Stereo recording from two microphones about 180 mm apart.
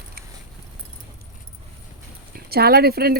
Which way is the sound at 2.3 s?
60° right (ahead or behind).